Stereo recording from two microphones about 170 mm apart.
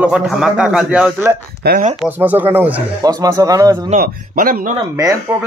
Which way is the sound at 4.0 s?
55° right (ahead or behind).